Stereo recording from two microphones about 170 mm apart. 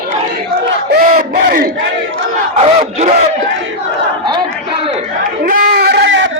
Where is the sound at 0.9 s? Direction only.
60° right (ahead or behind).